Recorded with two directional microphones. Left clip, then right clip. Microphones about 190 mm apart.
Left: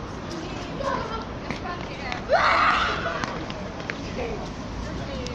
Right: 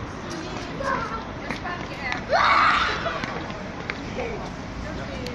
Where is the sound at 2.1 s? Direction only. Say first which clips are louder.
Right 1 dB; 45° left (ahead or behind).